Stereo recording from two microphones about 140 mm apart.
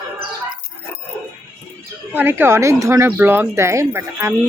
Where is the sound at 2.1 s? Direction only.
15° right (ahead or behind).